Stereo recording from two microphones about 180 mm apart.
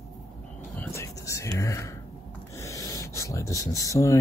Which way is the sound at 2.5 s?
15° left (ahead or behind).